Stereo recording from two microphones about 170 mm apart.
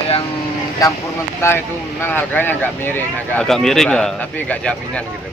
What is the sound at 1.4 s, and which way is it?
Speech, 15° left (ahead or behind).